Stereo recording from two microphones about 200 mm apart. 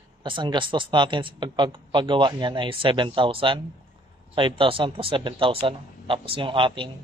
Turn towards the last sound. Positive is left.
turn(degrees=-25)  # may be behind; listen again after turning